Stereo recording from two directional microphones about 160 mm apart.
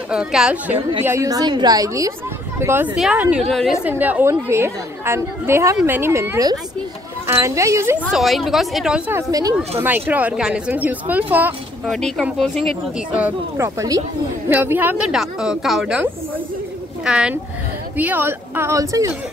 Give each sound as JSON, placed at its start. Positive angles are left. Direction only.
{"t": 0.1, "sound": "speech", "side_deg": -5}
{"t": 1.0, "sound": "a woman's voice", "side_deg": -20}
{"t": 4.0, "sound": "speech", "side_deg": -10}
{"t": 8.1, "sound": "speech", "side_deg": 0}
{"t": 9.3, "sound": "a woman's voice", "side_deg": -25}
{"t": 9.8, "sound": "speech", "side_deg": -10}
{"t": 11.9, "sound": "speech", "side_deg": 0}
{"t": 13.7, "sound": "a woman's voice", "side_deg": -20}
{"t": 14.5, "sound": "speech", "side_deg": -10}